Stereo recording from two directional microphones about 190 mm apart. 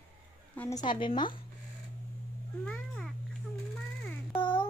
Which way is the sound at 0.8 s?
25° left (ahead or behind).